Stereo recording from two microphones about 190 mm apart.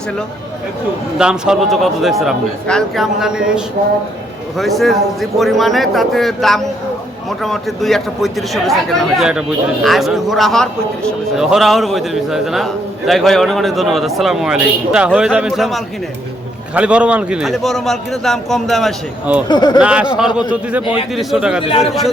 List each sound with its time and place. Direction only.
1.2 s a man's voice: 5° right (ahead or behind)
19.5 s speech: 20° left (ahead or behind)
19.8 s a man's voice: 5° right (ahead or behind)